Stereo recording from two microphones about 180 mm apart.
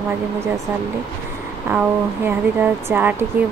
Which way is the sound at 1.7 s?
10° right (ahead or behind).